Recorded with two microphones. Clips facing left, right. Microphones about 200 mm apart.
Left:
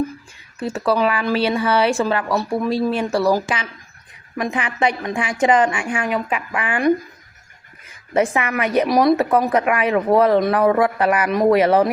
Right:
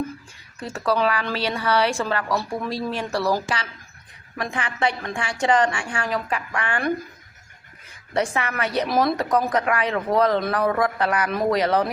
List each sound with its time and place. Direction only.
0.7 s a woman's voice: 15° left (ahead or behind)
6.5 s a woman's voice: 5° left (ahead or behind)
8.1 s a woman's voice: 10° left (ahead or behind)